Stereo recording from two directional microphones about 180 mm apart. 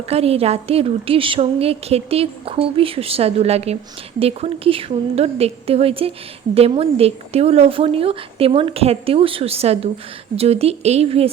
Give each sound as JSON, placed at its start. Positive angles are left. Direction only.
{"t": 0.1, "sound": "speech", "side_deg": -35}